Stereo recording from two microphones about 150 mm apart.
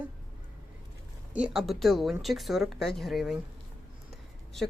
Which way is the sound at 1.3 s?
5° right (ahead or behind).